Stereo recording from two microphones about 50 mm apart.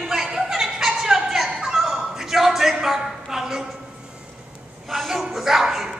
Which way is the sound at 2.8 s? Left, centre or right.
Centre.